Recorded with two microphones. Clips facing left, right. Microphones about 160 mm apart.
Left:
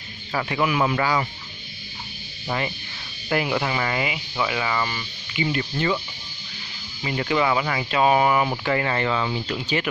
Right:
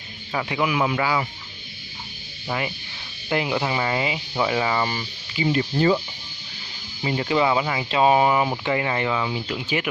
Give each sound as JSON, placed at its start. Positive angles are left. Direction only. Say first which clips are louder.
{"t": 0.3, "sound": "speech", "louder": "even", "side_deg": -10}
{"t": 2.4, "sound": "speech", "louder": "even", "side_deg": -10}
{"t": 3.3, "sound": "speech", "louder": "even", "side_deg": -20}
{"t": 7.0, "sound": "speech", "louder": "right 1 dB", "side_deg": -25}